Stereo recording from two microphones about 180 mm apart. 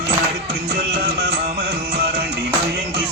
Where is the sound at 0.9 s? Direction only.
65° right (ahead or behind).